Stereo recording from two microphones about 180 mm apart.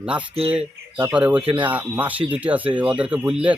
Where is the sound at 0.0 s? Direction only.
5° right (ahead or behind).